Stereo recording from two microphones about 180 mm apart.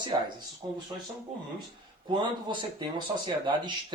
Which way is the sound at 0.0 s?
25° right (ahead or behind).